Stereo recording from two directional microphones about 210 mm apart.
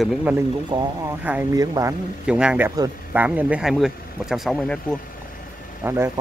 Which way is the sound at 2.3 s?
5° right (ahead or behind).